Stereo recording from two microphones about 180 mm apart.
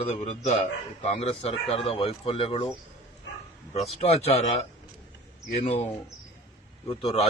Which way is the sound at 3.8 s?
35° left (ahead or behind).